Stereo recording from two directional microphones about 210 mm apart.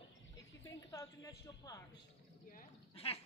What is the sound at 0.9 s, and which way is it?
Speech, 15° left (ahead or behind).